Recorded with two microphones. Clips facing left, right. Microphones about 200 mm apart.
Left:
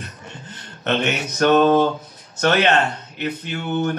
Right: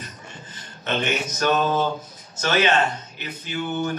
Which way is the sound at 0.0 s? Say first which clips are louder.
Left 3 dB; 65° left (ahead or behind).